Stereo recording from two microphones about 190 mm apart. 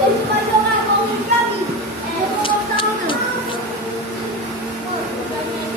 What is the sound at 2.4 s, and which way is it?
Music, 25° left (ahead or behind).